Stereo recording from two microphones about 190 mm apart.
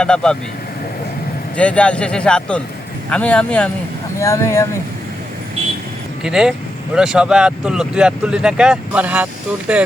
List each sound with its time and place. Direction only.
0.0 s speech: 5° left (ahead or behind)
1.5 s speech: 5° left (ahead or behind)
6.2 s speech: 5° right (ahead or behind)